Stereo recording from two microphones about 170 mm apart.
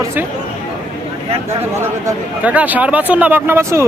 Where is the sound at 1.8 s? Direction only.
10° right (ahead or behind).